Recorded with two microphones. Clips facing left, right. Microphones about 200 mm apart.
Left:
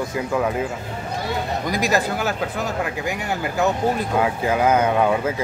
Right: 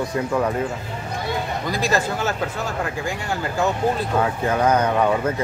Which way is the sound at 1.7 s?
15° left (ahead or behind).